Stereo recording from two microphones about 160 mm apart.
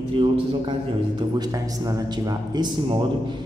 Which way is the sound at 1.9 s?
25° right (ahead or behind).